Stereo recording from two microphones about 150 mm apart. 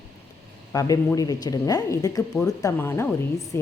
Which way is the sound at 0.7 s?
20° left (ahead or behind).